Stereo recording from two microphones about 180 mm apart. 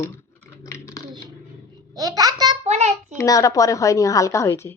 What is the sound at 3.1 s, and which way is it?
A woman's voice, 20° left (ahead or behind).